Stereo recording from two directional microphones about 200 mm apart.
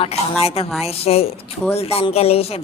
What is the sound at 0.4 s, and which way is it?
Speech, 30° left (ahead or behind).